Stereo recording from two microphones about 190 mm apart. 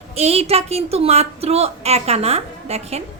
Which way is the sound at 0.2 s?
35° right (ahead or behind).